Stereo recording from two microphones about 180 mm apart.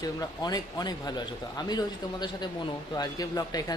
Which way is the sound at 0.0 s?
20° left (ahead or behind).